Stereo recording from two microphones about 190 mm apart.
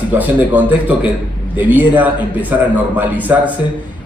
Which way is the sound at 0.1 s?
10° right (ahead or behind).